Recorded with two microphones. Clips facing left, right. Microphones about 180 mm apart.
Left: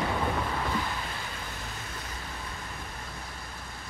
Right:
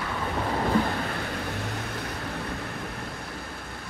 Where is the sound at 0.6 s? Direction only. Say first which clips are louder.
Right 7 dB; 55° right (ahead or behind).